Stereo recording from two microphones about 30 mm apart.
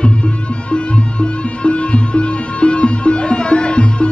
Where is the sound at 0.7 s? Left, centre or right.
Left.